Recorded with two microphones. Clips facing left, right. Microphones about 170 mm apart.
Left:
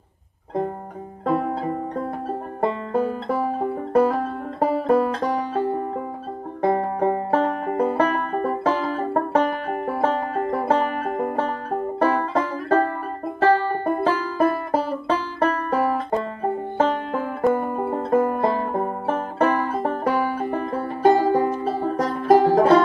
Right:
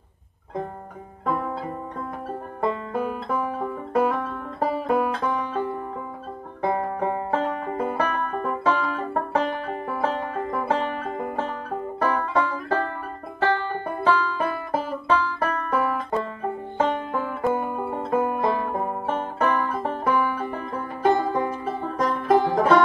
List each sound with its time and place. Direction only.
1.2 s music: 40° left (ahead or behind)
6.6 s banjo: 35° left (ahead or behind)
9.8 s music: 40° left (ahead or behind)
16.7 s banjo: 35° left (ahead or behind)
20.1 s music: 40° left (ahead or behind)